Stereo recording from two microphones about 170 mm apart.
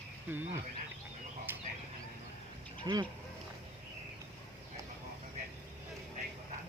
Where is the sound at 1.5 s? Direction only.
10° right (ahead or behind).